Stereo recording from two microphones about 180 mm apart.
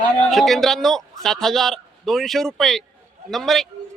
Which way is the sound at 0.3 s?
Centre (ahead or behind).